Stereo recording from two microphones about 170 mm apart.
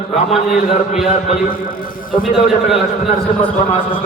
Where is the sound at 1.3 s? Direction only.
55° left (ahead or behind).